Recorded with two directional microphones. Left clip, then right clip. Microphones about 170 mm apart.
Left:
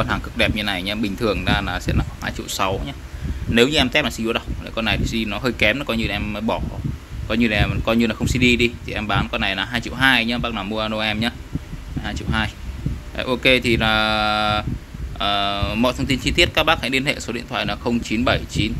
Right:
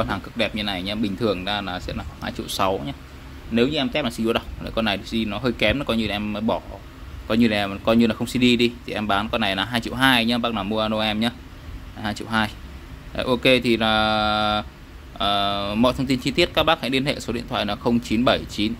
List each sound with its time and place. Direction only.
0.0 s speech: centre (ahead or behind)
2.3 s speech: 20° right (ahead or behind)
3.5 s speech: centre (ahead or behind)
4.2 s speech: 20° right (ahead or behind)
12.0 s speech: 35° right (ahead or behind)